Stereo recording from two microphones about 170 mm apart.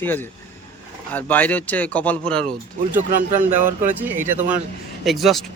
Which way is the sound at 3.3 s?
10° right (ahead or behind).